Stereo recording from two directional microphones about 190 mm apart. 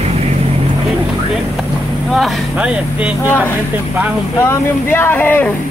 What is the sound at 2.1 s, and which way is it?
Speech, centre (ahead or behind).